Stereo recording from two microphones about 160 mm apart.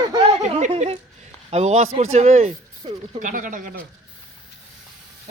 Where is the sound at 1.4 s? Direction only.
45° right (ahead or behind).